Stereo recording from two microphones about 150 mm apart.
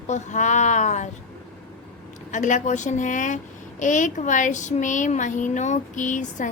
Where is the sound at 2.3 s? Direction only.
55° left (ahead or behind).